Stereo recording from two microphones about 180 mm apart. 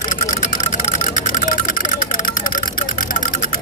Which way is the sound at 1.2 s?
45° left (ahead or behind).